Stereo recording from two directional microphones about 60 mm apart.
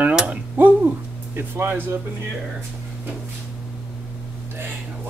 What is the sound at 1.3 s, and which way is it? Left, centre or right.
Speech, right.